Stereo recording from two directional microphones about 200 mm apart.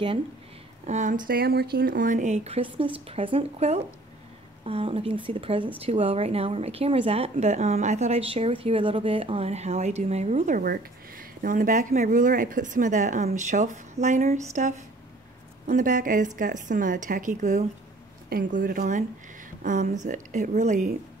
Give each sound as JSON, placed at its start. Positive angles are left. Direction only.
{"t": 0.8, "sound": "a woman's voice", "side_deg": -35}